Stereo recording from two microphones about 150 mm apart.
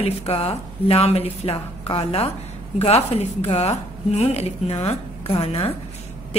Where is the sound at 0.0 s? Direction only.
40° left (ahead or behind).